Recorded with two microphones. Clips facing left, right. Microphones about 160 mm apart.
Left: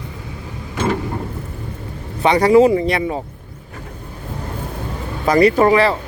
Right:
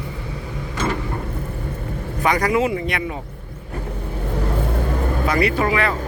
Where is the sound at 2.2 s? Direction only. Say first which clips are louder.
Left 8 dB; 30° left (ahead or behind).